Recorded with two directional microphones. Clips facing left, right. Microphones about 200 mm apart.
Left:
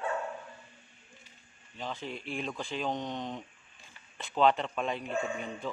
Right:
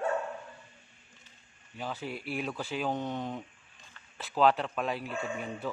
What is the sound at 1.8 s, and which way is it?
Speech, 10° right (ahead or behind).